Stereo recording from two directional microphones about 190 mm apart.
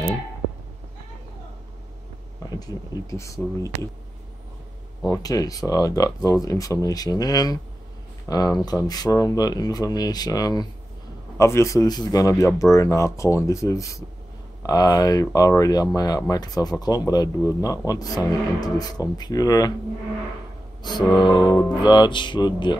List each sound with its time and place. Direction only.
2.6 s speech: 20° left (ahead or behind)
5.0 s speech: 20° left (ahead or behind)
21.2 s speech: 20° left (ahead or behind)